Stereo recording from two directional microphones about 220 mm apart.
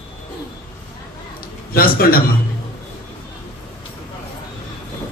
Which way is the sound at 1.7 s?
40° left (ahead or behind).